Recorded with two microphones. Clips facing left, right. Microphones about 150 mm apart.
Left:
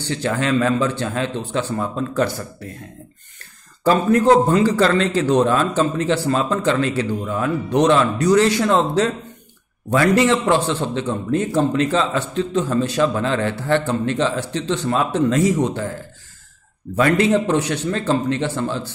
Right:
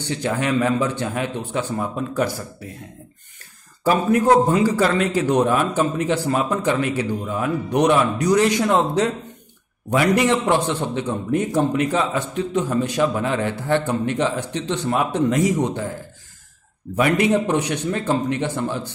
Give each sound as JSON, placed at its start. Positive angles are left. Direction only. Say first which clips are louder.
{"t": 0.0, "sound": "a man's voice", "louder": "left 1 dB", "side_deg": -15}
{"t": 3.8, "sound": "a man's voice", "louder": "left 2 dB", "side_deg": -10}